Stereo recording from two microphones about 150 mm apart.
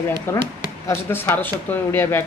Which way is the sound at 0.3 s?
15° left (ahead or behind).